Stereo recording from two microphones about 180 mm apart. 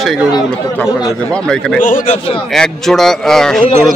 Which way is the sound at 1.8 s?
45° left (ahead or behind).